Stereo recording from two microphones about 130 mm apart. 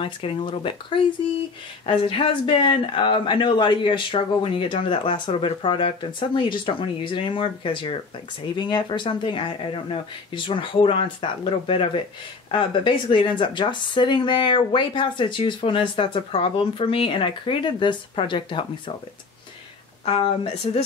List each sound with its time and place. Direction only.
0.0 s speech: 45° left (ahead or behind)
20.1 s speech: 45° left (ahead or behind)